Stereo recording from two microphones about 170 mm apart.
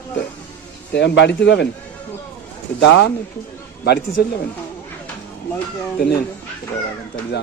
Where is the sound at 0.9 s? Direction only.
85° left.